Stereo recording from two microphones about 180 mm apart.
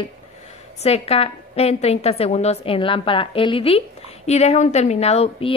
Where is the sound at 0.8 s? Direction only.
35° left (ahead or behind).